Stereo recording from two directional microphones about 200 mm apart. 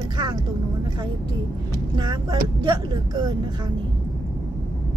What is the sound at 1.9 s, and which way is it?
Speech, 20° right (ahead or behind).